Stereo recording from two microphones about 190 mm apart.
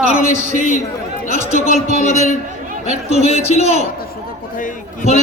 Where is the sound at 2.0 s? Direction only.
40° left (ahead or behind).